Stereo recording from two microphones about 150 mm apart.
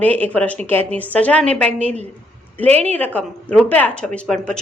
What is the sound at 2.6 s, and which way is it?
Speech, 45° right (ahead or behind).